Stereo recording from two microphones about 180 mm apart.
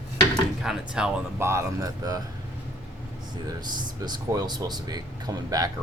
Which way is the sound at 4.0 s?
20° right (ahead or behind).